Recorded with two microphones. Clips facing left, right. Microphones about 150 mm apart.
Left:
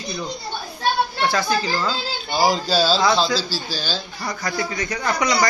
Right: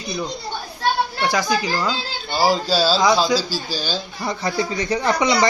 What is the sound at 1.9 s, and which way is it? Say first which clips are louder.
Speech: even; 5° right (ahead or behind).